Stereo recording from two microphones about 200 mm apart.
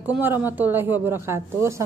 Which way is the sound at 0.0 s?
10° right (ahead or behind).